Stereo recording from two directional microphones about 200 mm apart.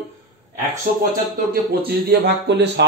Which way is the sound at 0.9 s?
45° right (ahead or behind).